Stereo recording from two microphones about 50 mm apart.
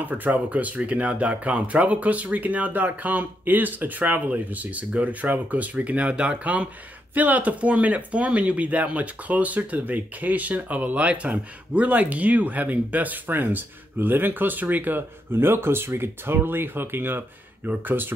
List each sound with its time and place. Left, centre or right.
0.0 s speech: right